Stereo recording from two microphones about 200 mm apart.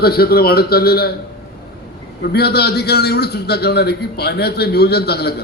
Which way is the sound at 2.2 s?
55° left (ahead or behind).